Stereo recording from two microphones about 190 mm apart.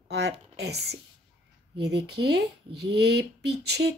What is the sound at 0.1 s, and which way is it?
A woman's voice, 60° right (ahead or behind).